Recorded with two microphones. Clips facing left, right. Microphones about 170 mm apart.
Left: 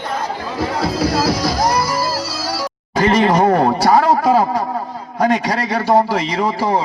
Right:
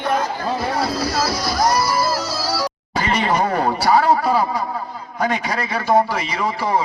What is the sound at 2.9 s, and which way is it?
A man's voice, 45° left (ahead or behind).